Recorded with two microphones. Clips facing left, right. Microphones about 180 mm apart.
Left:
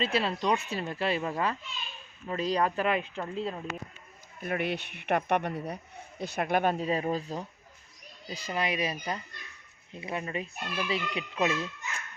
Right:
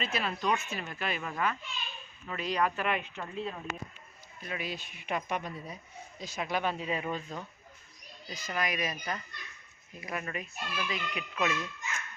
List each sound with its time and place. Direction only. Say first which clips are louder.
0.0 s speech: left 4 dB; 30° left (ahead or behind)
4.4 s a child's voice: left 7 dB; 55° left (ahead or behind); by 12.0 s 30° left (ahead or behind)